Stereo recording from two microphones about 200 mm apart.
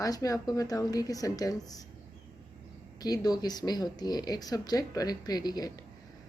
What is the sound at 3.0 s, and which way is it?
Speech, 20° left (ahead or behind).